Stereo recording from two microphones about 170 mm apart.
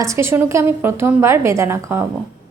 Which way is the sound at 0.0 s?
15° right (ahead or behind).